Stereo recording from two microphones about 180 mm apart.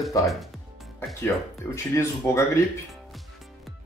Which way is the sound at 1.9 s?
15° left (ahead or behind).